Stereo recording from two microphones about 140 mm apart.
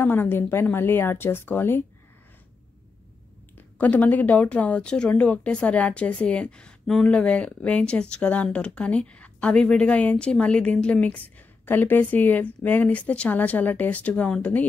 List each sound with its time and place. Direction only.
0.0 s speech: 15° left (ahead or behind)
3.5 s speech: 10° left (ahead or behind)